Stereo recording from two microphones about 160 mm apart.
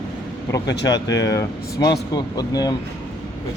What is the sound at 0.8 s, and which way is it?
Speech, 25° left (ahead or behind).